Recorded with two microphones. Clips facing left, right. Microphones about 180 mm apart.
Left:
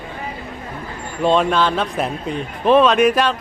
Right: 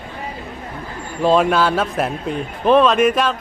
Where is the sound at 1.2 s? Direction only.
5° right (ahead or behind).